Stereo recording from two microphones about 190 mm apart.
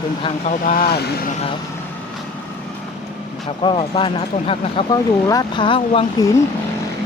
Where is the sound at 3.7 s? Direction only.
30° left (ahead or behind).